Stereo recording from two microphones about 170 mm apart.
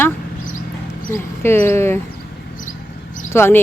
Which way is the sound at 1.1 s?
15° left (ahead or behind).